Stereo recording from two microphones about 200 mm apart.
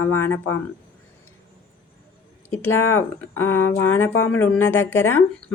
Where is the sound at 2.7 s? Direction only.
90° left.